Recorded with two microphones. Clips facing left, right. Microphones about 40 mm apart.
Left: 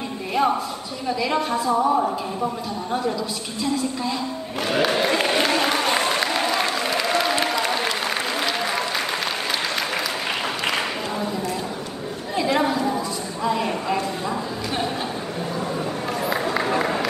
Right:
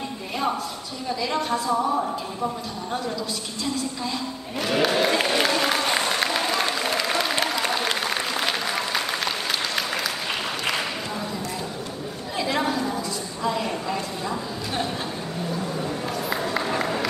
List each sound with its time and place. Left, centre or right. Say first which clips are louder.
1.0 s a woman's voice: left 3 dB; centre
4.7 s applause: left 1 dB; centre
12.4 s a sound: left 4 dB; centre
16.5 s run: left 3 dB; centre